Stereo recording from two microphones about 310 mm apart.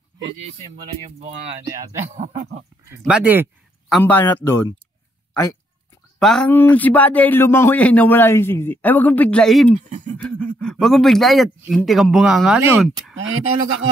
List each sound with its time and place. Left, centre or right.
2.1 s speech: right
3.0 s speech: centre
3.9 s speech: centre
6.1 s speech: centre
9.8 s speech: right
10.1 s speech: centre
13.1 s speech: right